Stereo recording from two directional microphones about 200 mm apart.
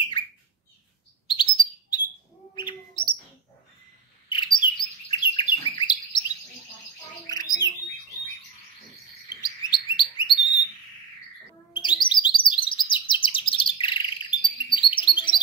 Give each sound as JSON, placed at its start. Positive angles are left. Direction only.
{"t": 1.2, "sound": "chirp", "side_deg": 25}
{"t": 2.5, "sound": "bird", "side_deg": 25}
{"t": 4.3, "sound": "chirp", "side_deg": 25}
{"t": 7.2, "sound": "bird", "side_deg": 20}
{"t": 9.3, "sound": "chirp", "side_deg": 20}
{"t": 11.7, "sound": "chirp", "side_deg": 25}
{"t": 12.9, "sound": "bird", "side_deg": 25}